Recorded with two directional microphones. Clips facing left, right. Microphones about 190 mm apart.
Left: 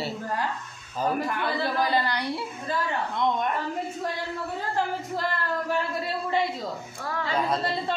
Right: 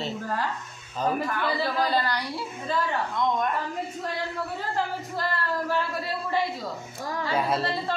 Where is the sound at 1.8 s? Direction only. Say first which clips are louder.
Left 1 dB; 20° left (ahead or behind).